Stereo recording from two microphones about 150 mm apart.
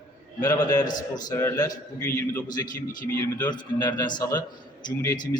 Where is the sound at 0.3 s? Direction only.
25° left (ahead or behind).